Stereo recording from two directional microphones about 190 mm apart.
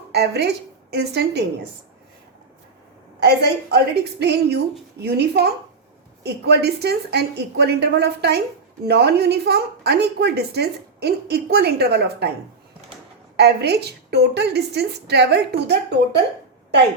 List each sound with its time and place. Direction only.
0.1 s a woman's voice: 60° right (ahead or behind)
3.2 s a woman's voice: 60° right (ahead or behind)
13.4 s a woman's voice: 60° right (ahead or behind)